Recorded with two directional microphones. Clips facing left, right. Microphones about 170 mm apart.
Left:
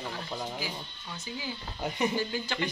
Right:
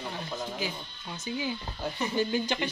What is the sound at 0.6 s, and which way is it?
Speech, 20° right (ahead or behind).